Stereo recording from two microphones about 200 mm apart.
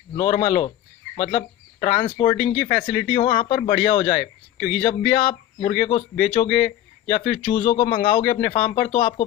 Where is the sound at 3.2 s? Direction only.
25° left (ahead or behind).